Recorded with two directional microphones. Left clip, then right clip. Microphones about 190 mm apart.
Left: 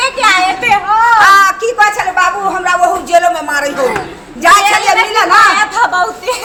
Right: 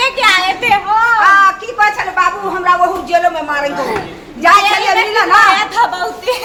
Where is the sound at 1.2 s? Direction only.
70° left (ahead or behind).